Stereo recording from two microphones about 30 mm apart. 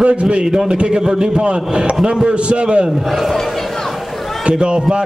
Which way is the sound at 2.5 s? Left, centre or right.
Right.